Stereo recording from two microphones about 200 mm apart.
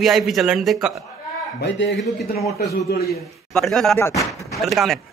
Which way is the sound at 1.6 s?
60° left (ahead or behind).